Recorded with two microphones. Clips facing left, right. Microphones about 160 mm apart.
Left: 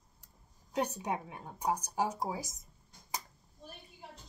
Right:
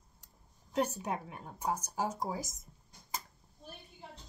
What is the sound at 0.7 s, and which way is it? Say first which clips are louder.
A woman's voice: right 1 dB; 20° left (ahead or behind).